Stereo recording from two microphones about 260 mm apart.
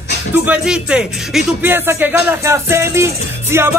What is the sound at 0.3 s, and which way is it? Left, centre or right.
Speech, centre.